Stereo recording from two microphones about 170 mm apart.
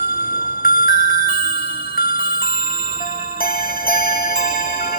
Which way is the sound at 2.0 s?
65° left (ahead or behind).